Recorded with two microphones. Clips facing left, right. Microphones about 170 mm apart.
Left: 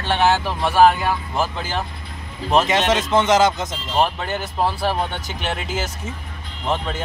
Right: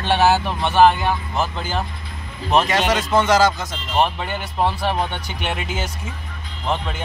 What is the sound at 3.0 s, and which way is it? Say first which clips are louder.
Speech: right 1 dB; 20° left (ahead or behind).